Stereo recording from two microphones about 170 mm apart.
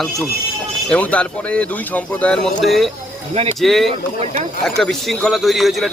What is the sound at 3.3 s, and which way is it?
Speech, 40° right (ahead or behind).